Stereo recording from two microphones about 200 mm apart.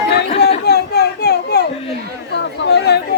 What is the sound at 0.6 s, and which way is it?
Children playing, 55° left (ahead or behind).